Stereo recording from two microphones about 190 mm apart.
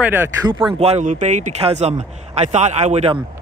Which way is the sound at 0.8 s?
35° right (ahead or behind).